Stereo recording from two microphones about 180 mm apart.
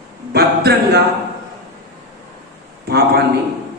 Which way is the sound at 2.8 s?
60° right (ahead or behind).